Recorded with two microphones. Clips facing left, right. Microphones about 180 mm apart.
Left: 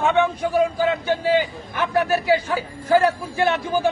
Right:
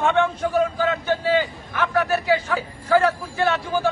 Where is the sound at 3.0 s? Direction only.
15° left (ahead or behind).